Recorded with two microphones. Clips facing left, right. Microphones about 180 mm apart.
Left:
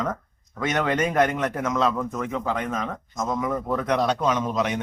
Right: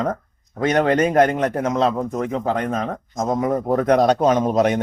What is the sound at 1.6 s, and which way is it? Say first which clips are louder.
A man's voice: right 2 dB; 35° right (ahead or behind).